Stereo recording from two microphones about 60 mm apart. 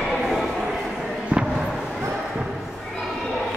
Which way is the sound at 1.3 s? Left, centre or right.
Right.